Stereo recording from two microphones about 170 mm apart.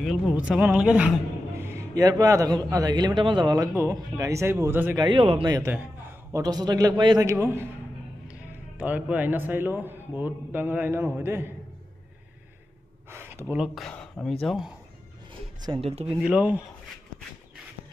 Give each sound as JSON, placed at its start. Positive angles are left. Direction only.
{"t": 0.0, "sound": "a man's voice", "side_deg": 0}
{"t": 4.9, "sound": "a man's voice", "side_deg": -30}
{"t": 13.1, "sound": "speech", "side_deg": -15}
{"t": 13.7, "sound": "speech", "side_deg": 5}
{"t": 15.8, "sound": "speech", "side_deg": -40}
{"t": 16.2, "sound": "speech", "side_deg": -10}